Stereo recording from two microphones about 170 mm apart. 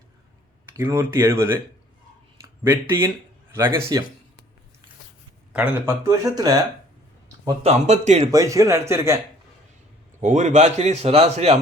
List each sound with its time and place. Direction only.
0.8 s speech: 15° right (ahead or behind)
2.6 s speech: 15° right (ahead or behind)
5.5 s speech: 10° right (ahead or behind)
7.6 s a man's voice: 40° right (ahead or behind)
8.3 s speech: 20° right (ahead or behind)
10.2 s a man's voice: 45° right (ahead or behind)